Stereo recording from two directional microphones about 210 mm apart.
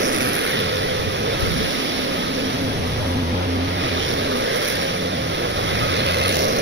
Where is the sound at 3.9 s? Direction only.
60° right (ahead or behind).